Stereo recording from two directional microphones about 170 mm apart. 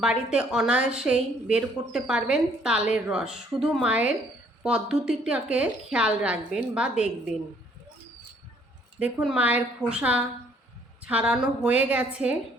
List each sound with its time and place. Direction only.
0.0 s a woman's voice: 5° right (ahead or behind)
9.0 s a woman's voice: 5° right (ahead or behind)